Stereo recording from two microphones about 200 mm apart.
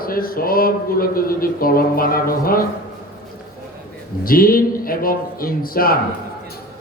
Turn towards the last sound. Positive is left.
turn(degrees=45)  # may be behind; listen again after turning